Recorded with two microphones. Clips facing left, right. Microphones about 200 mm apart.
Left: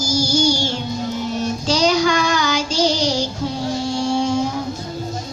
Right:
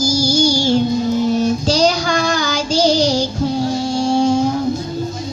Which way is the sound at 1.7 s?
35° right (ahead or behind).